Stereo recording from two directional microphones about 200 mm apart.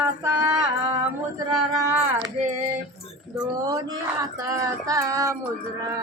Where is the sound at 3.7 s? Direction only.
20° right (ahead or behind).